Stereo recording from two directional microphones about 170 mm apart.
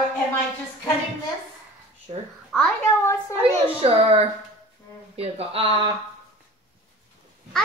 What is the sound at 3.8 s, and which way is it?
A man's voice, 35° right (ahead or behind).